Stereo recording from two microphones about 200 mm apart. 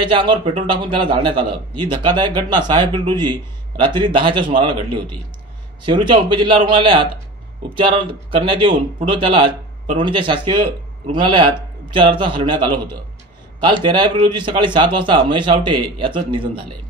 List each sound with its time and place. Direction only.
0.0 s a man's voice: 25° right (ahead or behind)
5.9 s a man's voice: 25° right (ahead or behind)
13.7 s a man's voice: 25° right (ahead or behind)